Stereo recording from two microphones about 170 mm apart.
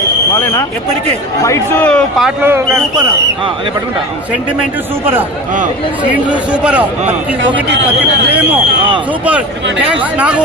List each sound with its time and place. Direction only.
0.3 s a man's voice: 15° left (ahead or behind)
2.2 s speech: 15° right (ahead or behind)
6.5 s speech: 10° right (ahead or behind)
9.2 s speech: 10° right (ahead or behind)